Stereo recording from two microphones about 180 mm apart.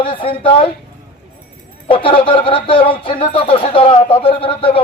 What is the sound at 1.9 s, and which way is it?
A man's voice, 30° left (ahead or behind).